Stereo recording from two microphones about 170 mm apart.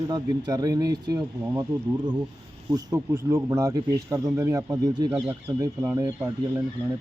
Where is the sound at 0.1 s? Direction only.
20° right (ahead or behind).